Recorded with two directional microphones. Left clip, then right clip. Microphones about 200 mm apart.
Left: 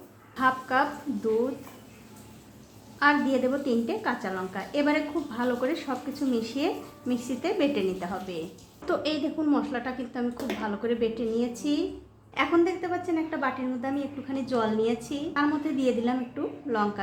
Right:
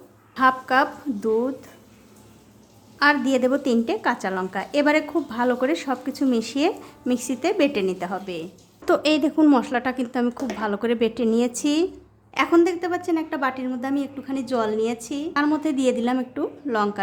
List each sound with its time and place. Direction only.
0.3 s a woman's voice: 35° right (ahead or behind)
3.0 s a woman's voice: 40° right (ahead or behind)
8.8 s a woman's voice: 45° right (ahead or behind)